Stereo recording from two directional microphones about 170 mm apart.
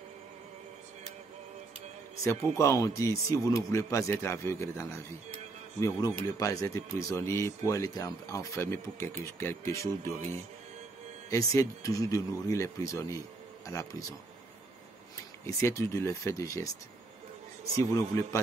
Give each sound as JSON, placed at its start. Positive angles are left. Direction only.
{"t": 2.2, "sound": "speech", "side_deg": 15}
{"t": 11.2, "sound": "speech", "side_deg": 20}
{"t": 15.4, "sound": "speech", "side_deg": 20}
{"t": 17.7, "sound": "speech", "side_deg": 20}